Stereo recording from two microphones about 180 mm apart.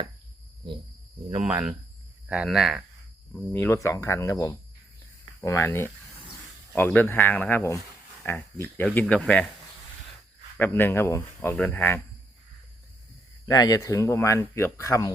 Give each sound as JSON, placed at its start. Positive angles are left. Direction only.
{"t": 1.4, "sound": "speech", "side_deg": -5}
{"t": 3.3, "sound": "speech", "side_deg": 10}
{"t": 10.6, "sound": "speech", "side_deg": 10}
{"t": 13.4, "sound": "speech", "side_deg": 20}